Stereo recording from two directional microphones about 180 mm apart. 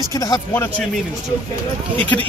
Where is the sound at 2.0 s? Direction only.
10° left (ahead or behind).